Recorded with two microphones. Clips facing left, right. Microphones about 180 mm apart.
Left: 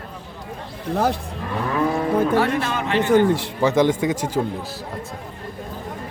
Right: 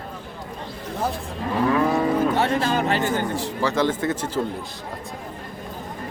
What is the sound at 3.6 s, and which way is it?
Speech, 15° left (ahead or behind).